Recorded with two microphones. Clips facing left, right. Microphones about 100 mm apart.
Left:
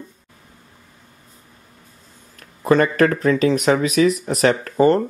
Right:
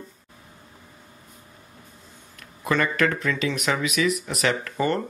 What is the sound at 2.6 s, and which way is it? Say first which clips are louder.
Speech: left 7 dB; 35° left (ahead or behind).